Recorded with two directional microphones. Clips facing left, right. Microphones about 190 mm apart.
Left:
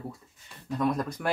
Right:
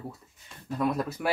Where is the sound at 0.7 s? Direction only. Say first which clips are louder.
Even; 5° right (ahead or behind).